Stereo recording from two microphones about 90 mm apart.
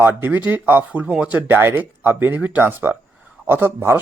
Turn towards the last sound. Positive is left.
turn(degrees=-30)  # may be behind; listen again after turning